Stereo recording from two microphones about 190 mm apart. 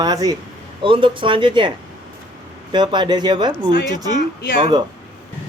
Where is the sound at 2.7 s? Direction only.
25° right (ahead or behind).